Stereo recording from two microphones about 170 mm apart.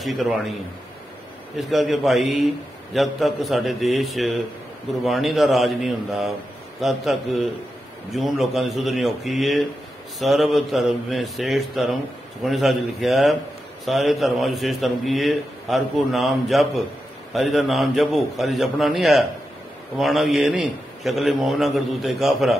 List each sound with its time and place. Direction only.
0.0 s a man's voice: centre (ahead or behind)
1.6 s a man's voice: centre (ahead or behind)